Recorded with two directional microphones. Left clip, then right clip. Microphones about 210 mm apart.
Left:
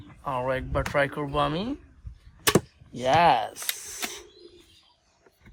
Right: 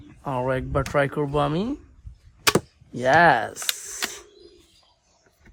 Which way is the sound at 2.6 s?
45° right (ahead or behind).